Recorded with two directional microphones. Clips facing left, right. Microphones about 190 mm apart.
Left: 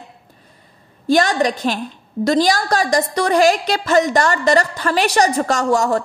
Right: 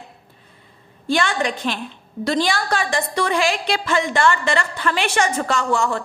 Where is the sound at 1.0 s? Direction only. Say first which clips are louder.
Left 5 dB; 40° left (ahead or behind).